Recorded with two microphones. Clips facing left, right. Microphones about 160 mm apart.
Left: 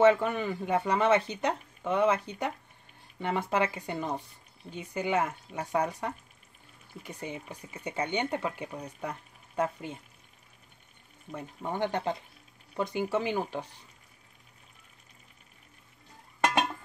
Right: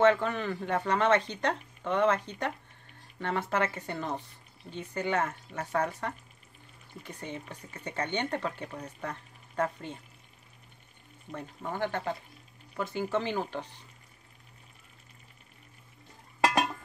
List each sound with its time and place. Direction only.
0.0 s speech: 10° left (ahead or behind)
11.3 s speech: 15° left (ahead or behind)